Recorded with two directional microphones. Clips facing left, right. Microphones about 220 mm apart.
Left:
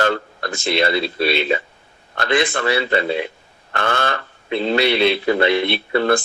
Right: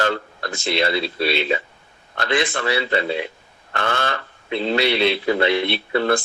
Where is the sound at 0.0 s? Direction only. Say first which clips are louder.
Left 3 dB; 50° left (ahead or behind).